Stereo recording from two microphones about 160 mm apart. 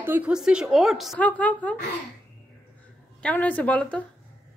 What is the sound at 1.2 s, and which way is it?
Speech, 10° left (ahead or behind).